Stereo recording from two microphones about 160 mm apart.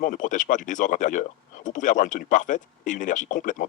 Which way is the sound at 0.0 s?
55° left (ahead or behind).